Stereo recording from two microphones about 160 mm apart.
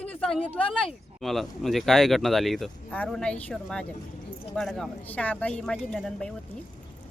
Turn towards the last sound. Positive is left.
turn(degrees=5)  # may be behind; listen again after turning